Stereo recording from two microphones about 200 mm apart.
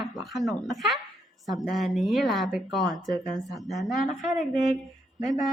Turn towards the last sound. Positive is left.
turn(degrees=0)  # may be behind; listen again after turning